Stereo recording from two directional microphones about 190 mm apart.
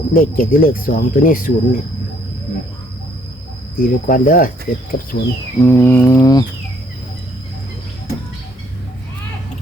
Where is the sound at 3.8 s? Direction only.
50° left (ahead or behind).